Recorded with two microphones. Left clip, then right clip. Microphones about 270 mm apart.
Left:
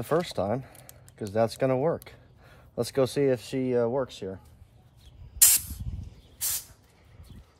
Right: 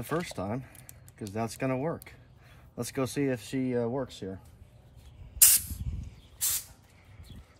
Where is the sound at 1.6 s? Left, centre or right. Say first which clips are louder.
Left 6 dB; left.